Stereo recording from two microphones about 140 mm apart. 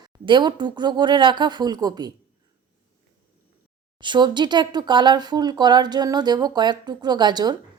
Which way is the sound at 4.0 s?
35° right (ahead or behind).